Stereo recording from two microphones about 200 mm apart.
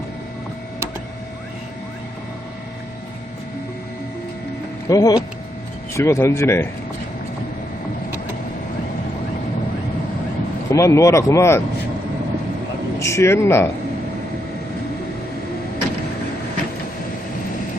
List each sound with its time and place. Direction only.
4.9 s speech: 20° left (ahead or behind)
10.7 s speech: 15° left (ahead or behind)
13.0 s speech: 15° left (ahead or behind)